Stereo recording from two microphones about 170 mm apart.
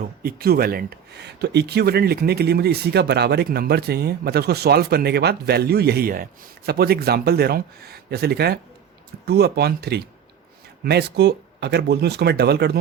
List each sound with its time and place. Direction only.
0.2 s speech: 60° right (ahead or behind)